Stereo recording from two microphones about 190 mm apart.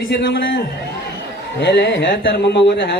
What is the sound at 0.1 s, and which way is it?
Speech, 60° left (ahead or behind).